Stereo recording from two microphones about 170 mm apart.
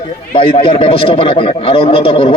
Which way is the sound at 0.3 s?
30° left (ahead or behind).